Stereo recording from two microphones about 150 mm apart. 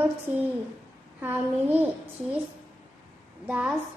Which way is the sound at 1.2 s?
10° right (ahead or behind).